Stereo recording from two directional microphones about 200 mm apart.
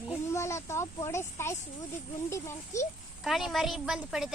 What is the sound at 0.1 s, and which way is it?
A child's voice, 15° left (ahead or behind).